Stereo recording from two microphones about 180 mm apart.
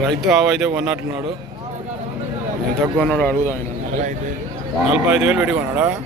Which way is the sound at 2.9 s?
5° left (ahead or behind).